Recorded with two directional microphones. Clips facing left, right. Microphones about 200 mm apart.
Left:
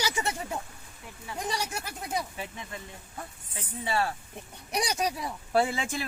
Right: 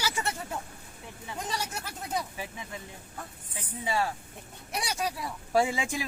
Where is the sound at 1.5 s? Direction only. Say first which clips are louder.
Left 3 dB; 15° left (ahead or behind).